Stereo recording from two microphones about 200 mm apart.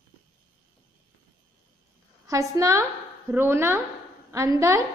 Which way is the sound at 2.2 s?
15° right (ahead or behind).